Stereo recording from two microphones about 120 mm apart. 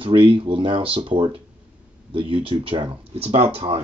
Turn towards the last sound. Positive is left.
turn(degrees=-60)  # may be behind; listen again after turning